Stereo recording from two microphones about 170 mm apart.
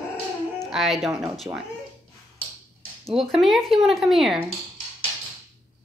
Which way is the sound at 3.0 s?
Centre (ahead or behind).